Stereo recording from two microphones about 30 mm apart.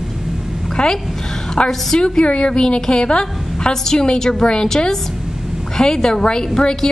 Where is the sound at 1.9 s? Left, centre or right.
Left.